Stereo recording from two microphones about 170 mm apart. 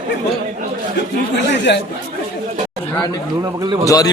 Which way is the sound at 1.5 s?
90° left.